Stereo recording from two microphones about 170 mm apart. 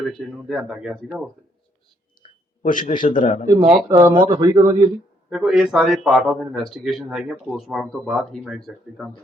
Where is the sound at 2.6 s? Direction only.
50° left (ahead or behind).